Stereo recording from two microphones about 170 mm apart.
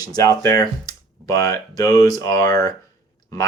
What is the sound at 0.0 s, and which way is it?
Speech, 20° left (ahead or behind).